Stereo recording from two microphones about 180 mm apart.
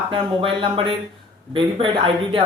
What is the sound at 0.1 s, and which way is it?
Speech, 30° right (ahead or behind).